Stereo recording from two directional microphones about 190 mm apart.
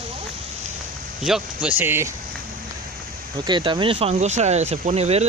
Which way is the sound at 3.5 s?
25° right (ahead or behind).